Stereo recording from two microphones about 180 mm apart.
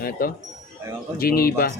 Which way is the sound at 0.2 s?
55° left (ahead or behind).